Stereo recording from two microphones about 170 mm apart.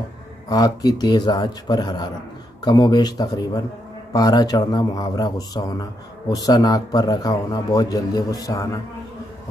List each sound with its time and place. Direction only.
0.5 s speech: 20° left (ahead or behind)